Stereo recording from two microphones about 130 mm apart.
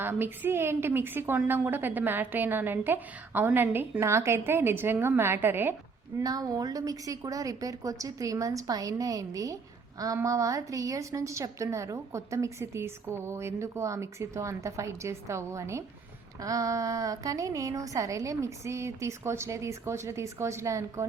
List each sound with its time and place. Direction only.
0.0 s a woman's voice: 15° right (ahead or behind)
6.1 s a woman's voice: 30° right (ahead or behind)